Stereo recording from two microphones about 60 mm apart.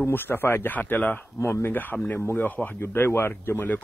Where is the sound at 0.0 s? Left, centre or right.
Left.